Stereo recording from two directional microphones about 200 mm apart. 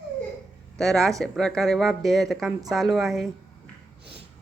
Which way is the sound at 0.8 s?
Centre (ahead or behind).